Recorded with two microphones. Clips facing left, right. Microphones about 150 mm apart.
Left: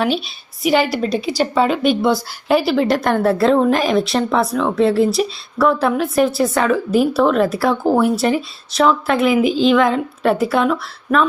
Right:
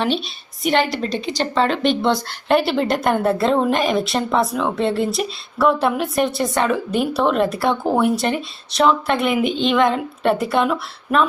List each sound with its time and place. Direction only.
0.6 s a woman's voice: 5° left (ahead or behind)